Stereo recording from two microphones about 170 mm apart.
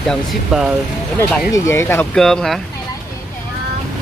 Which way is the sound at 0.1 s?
Centre (ahead or behind).